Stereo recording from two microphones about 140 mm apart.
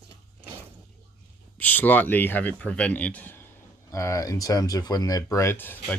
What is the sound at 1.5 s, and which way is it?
Speech, 10° left (ahead or behind).